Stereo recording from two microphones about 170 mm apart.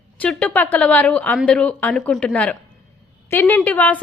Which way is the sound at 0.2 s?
5° left (ahead or behind).